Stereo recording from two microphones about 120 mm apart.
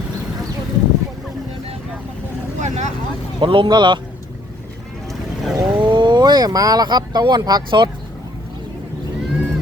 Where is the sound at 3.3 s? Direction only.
45° right (ahead or behind).